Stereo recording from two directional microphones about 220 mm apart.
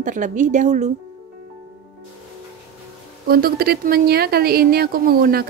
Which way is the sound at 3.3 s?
45° right (ahead or behind).